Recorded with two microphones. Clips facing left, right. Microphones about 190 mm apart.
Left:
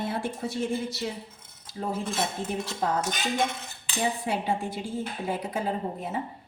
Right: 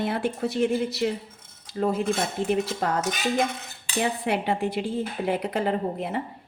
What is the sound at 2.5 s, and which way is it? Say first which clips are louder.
Speech: right 4 dB; 70° right (ahead or behind).